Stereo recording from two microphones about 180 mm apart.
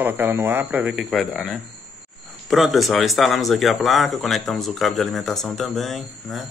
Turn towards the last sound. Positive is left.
turn(degrees=0)  # may be behind; listen again after turning